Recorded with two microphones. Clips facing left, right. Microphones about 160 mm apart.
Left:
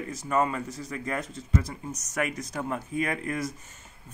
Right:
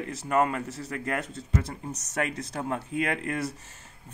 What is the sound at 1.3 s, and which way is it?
Speech, 30° right (ahead or behind).